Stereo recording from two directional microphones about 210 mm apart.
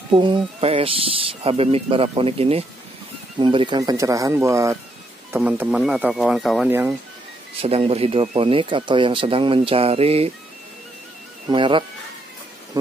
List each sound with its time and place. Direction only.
0.1 s speech: 25° right (ahead or behind)
7.6 s speech: 30° right (ahead or behind)
11.5 s speech: 25° right (ahead or behind)